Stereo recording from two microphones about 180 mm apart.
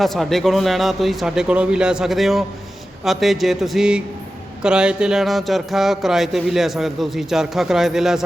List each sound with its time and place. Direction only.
0.0 s speech: centre (ahead or behind)